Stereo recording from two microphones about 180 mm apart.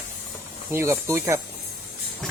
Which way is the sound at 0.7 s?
15° right (ahead or behind).